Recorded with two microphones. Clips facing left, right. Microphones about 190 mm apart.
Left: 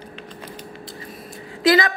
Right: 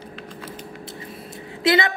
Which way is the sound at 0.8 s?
25° right (ahead or behind).